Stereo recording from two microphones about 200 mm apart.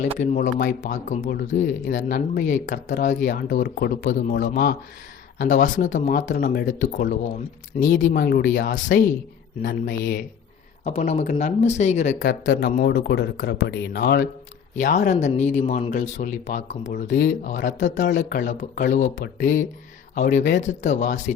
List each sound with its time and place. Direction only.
0.2 s speech: 45° left (ahead or behind)
7.8 s speech: 40° left (ahead or behind)
10.8 s speech: 35° left (ahead or behind); by 14.3 s 50° left (ahead or behind)
14.8 s speech: 40° left (ahead or behind)